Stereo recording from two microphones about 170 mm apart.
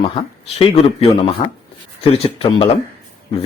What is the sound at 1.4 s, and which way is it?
Speech, 30° left (ahead or behind).